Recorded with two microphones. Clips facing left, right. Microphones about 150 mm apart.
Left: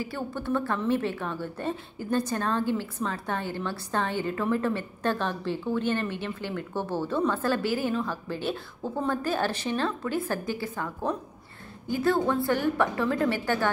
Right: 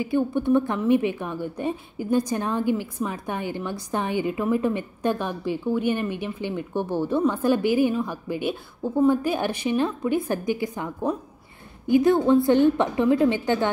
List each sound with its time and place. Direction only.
0.0 s a woman's voice: 20° right (ahead or behind)